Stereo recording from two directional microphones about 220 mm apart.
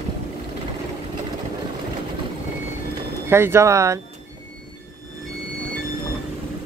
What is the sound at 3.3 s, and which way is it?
Speech, 10° right (ahead or behind).